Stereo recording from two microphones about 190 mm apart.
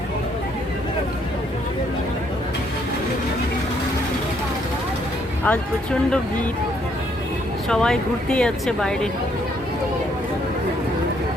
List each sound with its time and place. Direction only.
5.5 s speech: 5° left (ahead or behind)
7.7 s speech: 5° left (ahead or behind)